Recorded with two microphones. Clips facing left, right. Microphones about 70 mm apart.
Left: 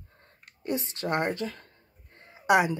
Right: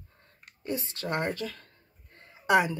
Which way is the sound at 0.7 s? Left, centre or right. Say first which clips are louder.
Left 3 dB; left.